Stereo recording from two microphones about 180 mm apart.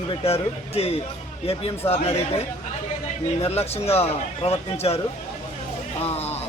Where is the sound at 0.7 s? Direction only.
35° left (ahead or behind).